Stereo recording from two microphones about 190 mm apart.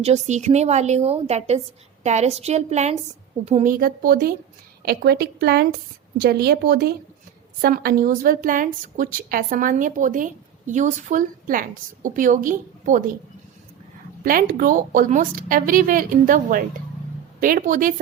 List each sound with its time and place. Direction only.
0.0 s a woman's voice: 35° right (ahead or behind)
14.2 s a woman's voice: 50° right (ahead or behind)